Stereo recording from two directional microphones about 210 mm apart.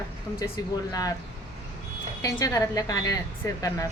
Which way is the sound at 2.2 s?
15° left (ahead or behind).